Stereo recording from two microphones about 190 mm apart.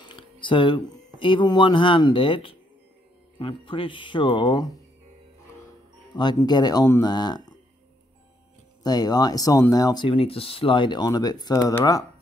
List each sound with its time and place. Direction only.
0.0 s speech: 25° left (ahead or behind)
6.1 s speech: 20° left (ahead or behind)
8.8 s speech: 20° left (ahead or behind)